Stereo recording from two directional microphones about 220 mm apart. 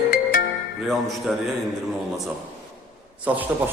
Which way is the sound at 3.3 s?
5° right (ahead or behind).